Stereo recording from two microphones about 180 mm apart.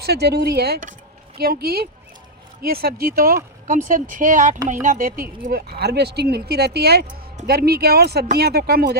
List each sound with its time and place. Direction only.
0.0 s speech: 65° right (ahead or behind)